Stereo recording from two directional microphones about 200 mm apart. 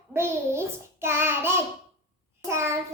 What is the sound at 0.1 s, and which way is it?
A child's voice, 10° right (ahead or behind).